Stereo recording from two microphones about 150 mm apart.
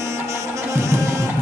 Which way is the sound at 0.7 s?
20° right (ahead or behind).